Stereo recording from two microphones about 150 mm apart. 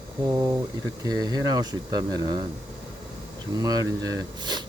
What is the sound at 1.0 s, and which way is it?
Speech, 25° right (ahead or behind).